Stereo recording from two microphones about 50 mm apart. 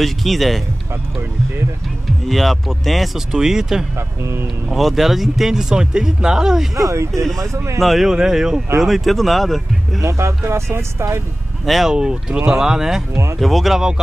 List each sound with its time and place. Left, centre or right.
0.0 s speech: centre
2.2 s speech: centre
3.3 s speech: centre
7.5 s speech: right
7.8 s speech: centre
10.0 s speech: right
11.6 s speech: centre
11.9 s speech: centre
13.4 s speech: centre